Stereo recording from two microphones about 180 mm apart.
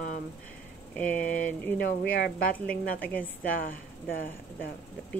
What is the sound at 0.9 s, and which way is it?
Speech, 10° left (ahead or behind).